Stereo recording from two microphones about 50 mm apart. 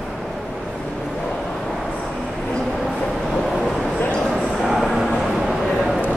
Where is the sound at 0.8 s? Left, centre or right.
Centre.